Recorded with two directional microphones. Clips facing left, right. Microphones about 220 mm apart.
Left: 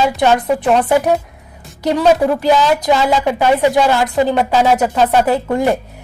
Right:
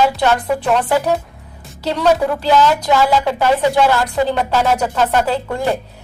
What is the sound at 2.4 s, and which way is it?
Music, 15° left (ahead or behind).